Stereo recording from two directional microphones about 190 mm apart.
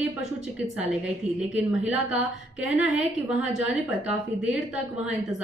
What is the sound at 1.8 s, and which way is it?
A woman's voice, 5° right (ahead or behind).